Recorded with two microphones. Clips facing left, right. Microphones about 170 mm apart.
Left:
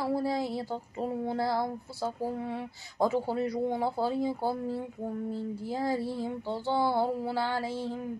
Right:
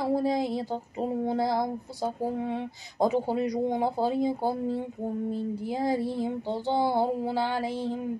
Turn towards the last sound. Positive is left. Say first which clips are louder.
# right 3 dB
turn(degrees=-15)  # may be behind; listen again after turning